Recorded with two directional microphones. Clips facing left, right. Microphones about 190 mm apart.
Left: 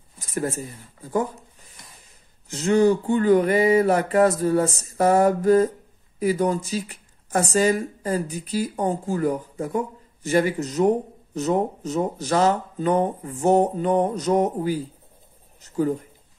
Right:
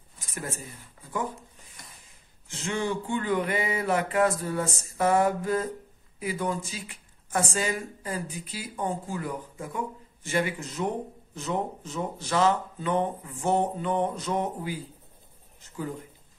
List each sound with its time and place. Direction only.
0.2 s speech: 40° left (ahead or behind)
2.4 s a woman's voice: 40° left (ahead or behind)